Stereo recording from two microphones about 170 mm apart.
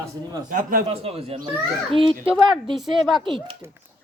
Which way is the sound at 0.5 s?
55° right (ahead or behind).